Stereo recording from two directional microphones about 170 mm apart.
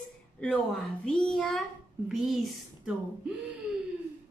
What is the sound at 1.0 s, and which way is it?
Speech, 5° left (ahead or behind).